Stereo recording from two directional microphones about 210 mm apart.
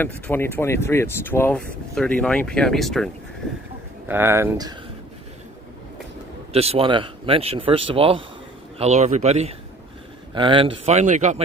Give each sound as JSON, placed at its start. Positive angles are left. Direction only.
{"t": 0.0, "sound": "speech", "side_deg": 10}
{"t": 4.1, "sound": "speech", "side_deg": -10}
{"t": 6.5, "sound": "speech", "side_deg": -30}